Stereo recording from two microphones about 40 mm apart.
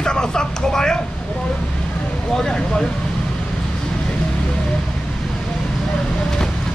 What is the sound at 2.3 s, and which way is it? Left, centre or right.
Speech, centre.